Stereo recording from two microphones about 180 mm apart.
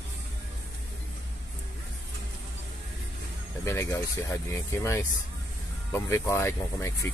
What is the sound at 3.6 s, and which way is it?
Speech, 15° left (ahead or behind).